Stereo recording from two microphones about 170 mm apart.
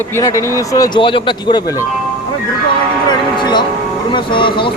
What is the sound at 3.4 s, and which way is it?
Speech, 25° left (ahead or behind).